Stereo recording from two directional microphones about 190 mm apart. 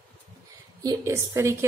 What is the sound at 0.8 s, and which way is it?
Speech, 15° right (ahead or behind).